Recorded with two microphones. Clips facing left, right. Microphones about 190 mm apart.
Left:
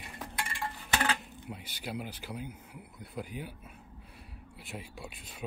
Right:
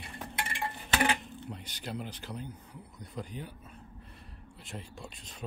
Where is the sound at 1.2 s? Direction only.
5° left (ahead or behind).